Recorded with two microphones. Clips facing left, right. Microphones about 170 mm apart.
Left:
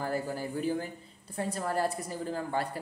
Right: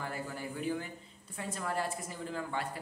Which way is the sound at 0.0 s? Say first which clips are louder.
Left 7 dB; 40° left (ahead or behind).